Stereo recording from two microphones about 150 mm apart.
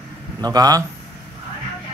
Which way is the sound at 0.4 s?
25° right (ahead or behind).